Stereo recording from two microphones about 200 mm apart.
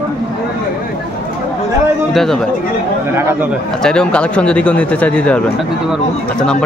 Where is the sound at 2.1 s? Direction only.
Centre (ahead or behind).